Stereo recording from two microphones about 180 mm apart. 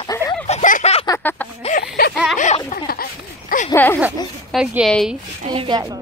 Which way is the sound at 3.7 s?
10° left (ahead or behind).